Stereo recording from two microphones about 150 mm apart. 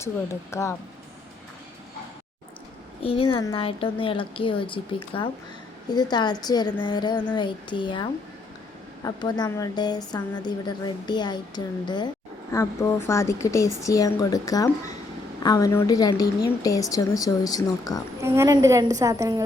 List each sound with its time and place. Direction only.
0.5 s a woman's voice: 20° left (ahead or behind)
3.0 s a woman's voice: 35° left (ahead or behind)
12.5 s a woman's voice: 20° left (ahead or behind)
18.2 s a woman's voice: 20° right (ahead or behind)